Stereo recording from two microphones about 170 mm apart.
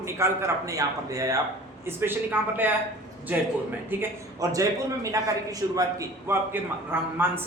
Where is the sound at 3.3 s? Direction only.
10° right (ahead or behind).